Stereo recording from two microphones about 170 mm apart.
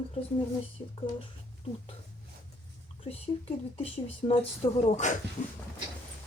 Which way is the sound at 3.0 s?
35° left (ahead or behind).